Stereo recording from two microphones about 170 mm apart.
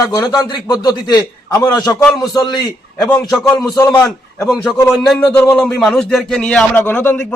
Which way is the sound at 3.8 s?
10° left (ahead or behind).